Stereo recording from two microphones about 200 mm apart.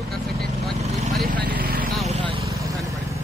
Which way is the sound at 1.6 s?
45° right (ahead or behind).